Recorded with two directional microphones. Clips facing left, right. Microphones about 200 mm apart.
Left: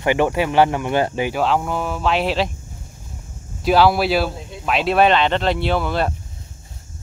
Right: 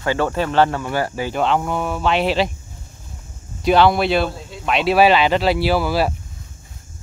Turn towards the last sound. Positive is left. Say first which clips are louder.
# right 2 dB
turn(degrees=-5)  # may be behind; listen again after turning